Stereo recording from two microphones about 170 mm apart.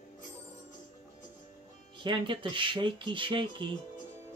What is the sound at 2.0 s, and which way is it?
Speech, 30° right (ahead or behind).